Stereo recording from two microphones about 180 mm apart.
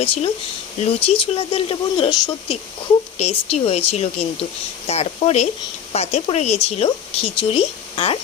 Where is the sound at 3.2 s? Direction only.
35° left (ahead or behind).